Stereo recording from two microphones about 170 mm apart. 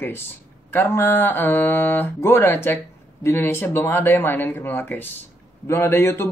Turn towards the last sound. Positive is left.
turn(degrees=15)  # may be behind; listen again after turning